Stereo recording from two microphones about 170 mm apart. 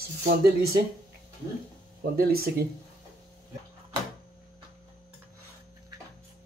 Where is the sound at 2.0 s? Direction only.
60° right (ahead or behind).